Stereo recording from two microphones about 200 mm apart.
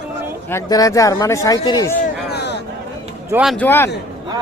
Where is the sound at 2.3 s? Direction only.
55° left (ahead or behind).